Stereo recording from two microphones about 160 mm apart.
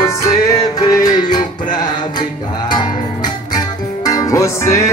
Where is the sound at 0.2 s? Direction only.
25° left (ahead or behind).